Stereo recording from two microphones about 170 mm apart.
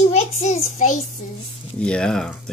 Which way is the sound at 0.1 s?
45° left (ahead or behind).